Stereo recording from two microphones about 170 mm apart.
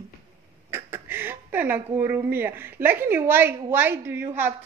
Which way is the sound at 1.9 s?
10° right (ahead or behind).